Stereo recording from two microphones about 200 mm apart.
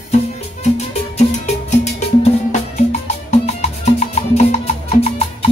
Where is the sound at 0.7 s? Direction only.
35° left (ahead or behind).